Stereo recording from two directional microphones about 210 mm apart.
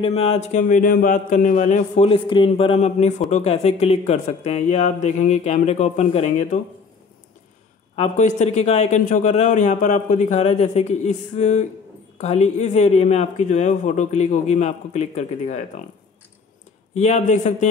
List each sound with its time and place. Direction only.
0.0 s a man's voice: 25° left (ahead or behind)
7.9 s a man's voice: 30° left (ahead or behind)
16.9 s a man's voice: 30° left (ahead or behind)